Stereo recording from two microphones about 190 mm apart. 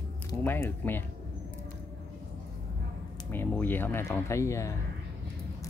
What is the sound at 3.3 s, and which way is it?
Speech, 10° left (ahead or behind).